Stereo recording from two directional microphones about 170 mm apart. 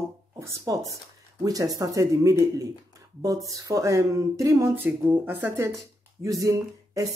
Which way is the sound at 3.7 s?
20° right (ahead or behind).